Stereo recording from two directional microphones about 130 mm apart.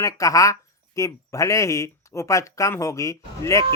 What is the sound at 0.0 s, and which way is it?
Speech, 25° left (ahead or behind).